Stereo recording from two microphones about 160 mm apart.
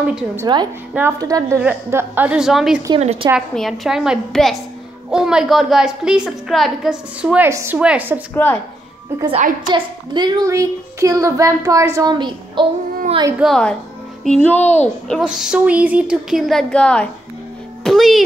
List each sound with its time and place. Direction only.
0.0 s a woman's voice: 10° right (ahead or behind)
3.0 s a woman's voice: 45° right (ahead or behind)
3.3 s a woman's voice: centre (ahead or behind)
7.4 s a woman's voice: 15° right (ahead or behind)
8.4 s speech: 10° left (ahead or behind)
9.7 s a child's voice: 30° right (ahead or behind)
13.4 s a woman's voice: 5° left (ahead or behind)